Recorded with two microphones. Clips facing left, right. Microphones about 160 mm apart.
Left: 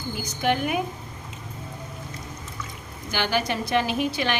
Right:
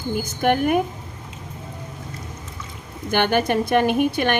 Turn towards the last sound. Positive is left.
turn(degrees=-55)  # may be behind; listen again after turning